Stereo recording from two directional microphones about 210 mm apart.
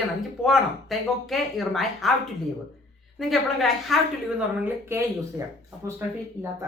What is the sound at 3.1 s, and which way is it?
Speech, centre (ahead or behind).